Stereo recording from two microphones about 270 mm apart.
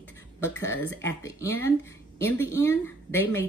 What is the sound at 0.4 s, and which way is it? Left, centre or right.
Speech, centre.